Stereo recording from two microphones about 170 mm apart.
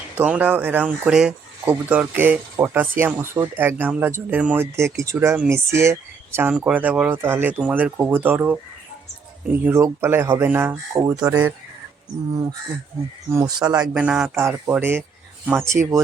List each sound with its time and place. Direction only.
0.2 s speech: 10° right (ahead or behind)
13.9 s speech: 5° right (ahead or behind)